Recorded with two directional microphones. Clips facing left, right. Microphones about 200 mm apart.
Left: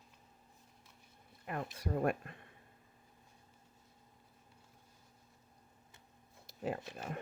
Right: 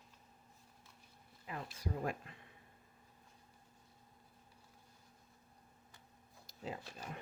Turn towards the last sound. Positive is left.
turn(degrees=60)  # may be behind; listen again after turning